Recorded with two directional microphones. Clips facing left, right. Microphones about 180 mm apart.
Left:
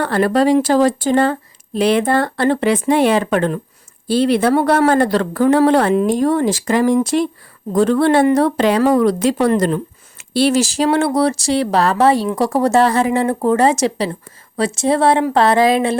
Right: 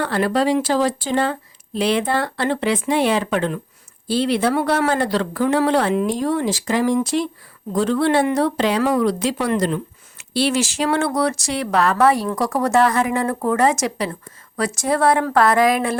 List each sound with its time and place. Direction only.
0.0 s a woman's voice: 50° left (ahead or behind); by 16.0 s 25° left (ahead or behind)